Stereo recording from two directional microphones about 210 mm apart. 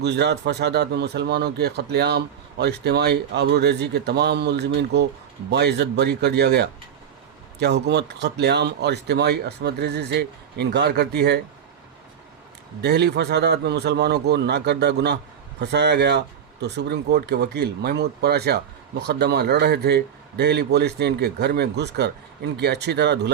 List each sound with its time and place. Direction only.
0.0 s speech: 55° right (ahead or behind)
12.8 s speech: 50° right (ahead or behind)